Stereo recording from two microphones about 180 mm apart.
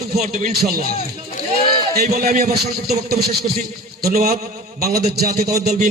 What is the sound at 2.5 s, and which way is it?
Speech, 60° right (ahead or behind).